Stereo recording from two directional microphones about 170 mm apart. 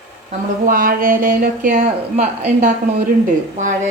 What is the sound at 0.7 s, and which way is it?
Speech, 55° right (ahead or behind).